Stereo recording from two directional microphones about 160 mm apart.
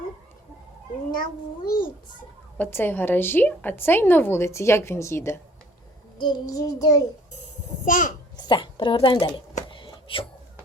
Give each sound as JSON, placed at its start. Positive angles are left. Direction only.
{"t": 1.6, "sound": "a child's voice", "side_deg": 65}
{"t": 2.6, "sound": "a woman's voice", "side_deg": 15}
{"t": 6.1, "sound": "child singing", "side_deg": 25}
{"t": 7.9, "sound": "a child's voice", "side_deg": 55}
{"t": 8.4, "sound": "a woman's voice", "side_deg": 30}
{"t": 9.6, "sound": "a sound", "side_deg": 30}